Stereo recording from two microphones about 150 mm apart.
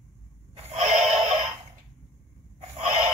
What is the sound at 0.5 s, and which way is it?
Music, 45° right (ahead or behind).